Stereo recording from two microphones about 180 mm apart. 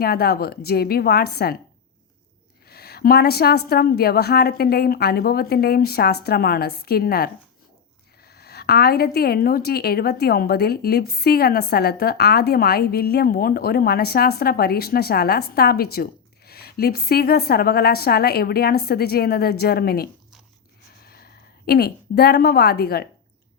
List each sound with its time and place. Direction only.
0.0 s a woman's voice: 60° left (ahead or behind)
2.6 s a woman's voice: 60° left (ahead or behind)